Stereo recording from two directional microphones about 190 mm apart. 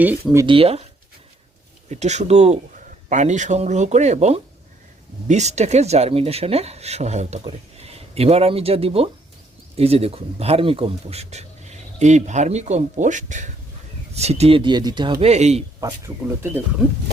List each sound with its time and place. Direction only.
0.0 s speech: 10° right (ahead or behind)
0.4 s speech: 30° right (ahead or behind)
1.9 s speech: 35° right (ahead or behind)
15.2 s speech: 35° right (ahead or behind)
15.8 s speech: 15° right (ahead or behind)